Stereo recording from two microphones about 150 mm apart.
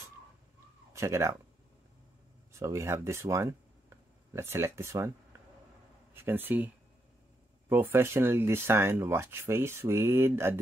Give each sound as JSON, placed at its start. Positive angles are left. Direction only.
{"t": 0.9, "sound": "speech", "side_deg": -20}
{"t": 2.6, "sound": "speech", "side_deg": -20}
{"t": 6.1, "sound": "speech", "side_deg": -15}
{"t": 7.7, "sound": "speech", "side_deg": -15}